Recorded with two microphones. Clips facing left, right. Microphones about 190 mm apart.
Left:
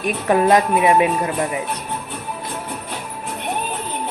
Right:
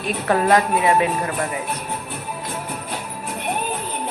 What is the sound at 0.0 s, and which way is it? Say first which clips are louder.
Speech: left 3 dB; 15° left (ahead or behind).